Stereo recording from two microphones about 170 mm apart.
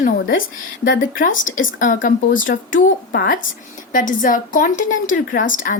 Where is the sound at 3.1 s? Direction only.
75° left (ahead or behind).